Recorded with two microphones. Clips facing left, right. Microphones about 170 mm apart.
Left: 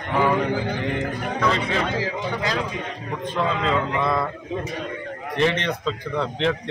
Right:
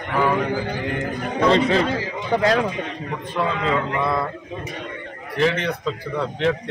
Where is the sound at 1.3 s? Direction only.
30° right (ahead or behind).